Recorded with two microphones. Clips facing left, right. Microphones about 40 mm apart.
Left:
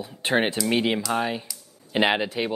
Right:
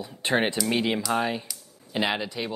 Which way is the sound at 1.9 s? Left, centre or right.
Left.